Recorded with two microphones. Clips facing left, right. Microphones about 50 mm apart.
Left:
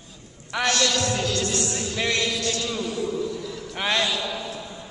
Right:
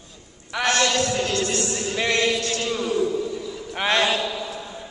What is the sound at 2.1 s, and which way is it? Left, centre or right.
Speech, right.